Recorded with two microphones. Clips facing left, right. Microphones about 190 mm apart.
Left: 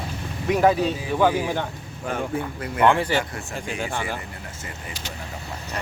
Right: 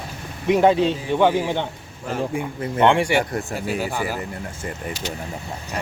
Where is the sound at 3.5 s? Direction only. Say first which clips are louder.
Right 1 dB; 5° right (ahead or behind).